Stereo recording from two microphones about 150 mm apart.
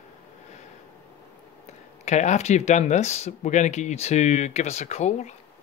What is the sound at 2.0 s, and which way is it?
Speech, 50° left (ahead or behind).